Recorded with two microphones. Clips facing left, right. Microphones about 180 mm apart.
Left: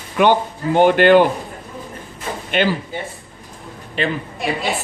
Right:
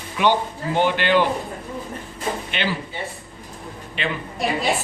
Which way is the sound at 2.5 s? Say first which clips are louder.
Left 11 dB; 50° left (ahead or behind).